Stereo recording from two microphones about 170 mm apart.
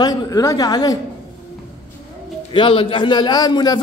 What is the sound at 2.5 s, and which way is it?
A man's voice, 30° left (ahead or behind).